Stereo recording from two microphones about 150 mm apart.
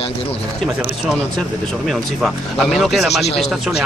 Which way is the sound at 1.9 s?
Centre (ahead or behind).